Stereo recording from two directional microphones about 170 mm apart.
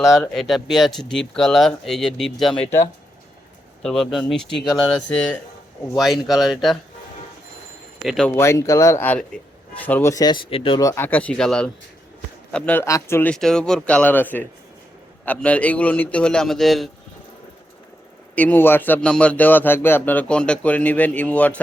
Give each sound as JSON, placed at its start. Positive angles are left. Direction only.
{"t": 0.1, "sound": "speech", "side_deg": 0}
{"t": 3.8, "sound": "speech", "side_deg": 0}
{"t": 8.0, "sound": "speech", "side_deg": 0}
{"t": 8.4, "sound": "a man's voice", "side_deg": 15}
{"t": 10.8, "sound": "a man's voice", "side_deg": 15}
{"t": 18.3, "sound": "a man's voice", "side_deg": 10}